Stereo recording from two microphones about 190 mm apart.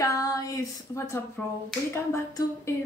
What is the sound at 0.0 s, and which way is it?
Female singing, 15° left (ahead or behind).